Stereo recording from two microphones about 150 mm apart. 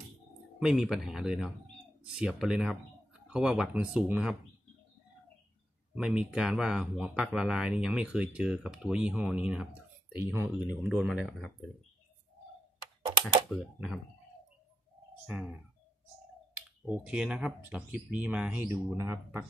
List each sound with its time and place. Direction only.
0.6 s speech: 5° right (ahead or behind)
5.9 s speech: 5° right (ahead or behind)
10.9 s speech: centre (ahead or behind)
13.5 s speech: 5° right (ahead or behind)
15.2 s speech: 10° right (ahead or behind)
16.5 s speech: 10° right (ahead or behind)